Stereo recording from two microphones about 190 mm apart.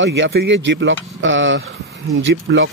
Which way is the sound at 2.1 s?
75° right (ahead or behind).